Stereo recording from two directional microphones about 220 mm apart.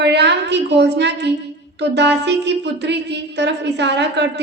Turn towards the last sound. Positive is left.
turn(degrees=-50)  # may be behind; listen again after turning